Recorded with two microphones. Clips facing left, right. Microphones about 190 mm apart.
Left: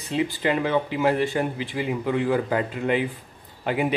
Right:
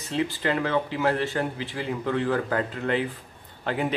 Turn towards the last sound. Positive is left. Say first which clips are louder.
# left 3 dB
turn(degrees=10)  # may be behind; listen again after turning